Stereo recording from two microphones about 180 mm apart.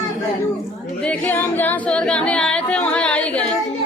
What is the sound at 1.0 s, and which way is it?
Singing, 5° left (ahead or behind).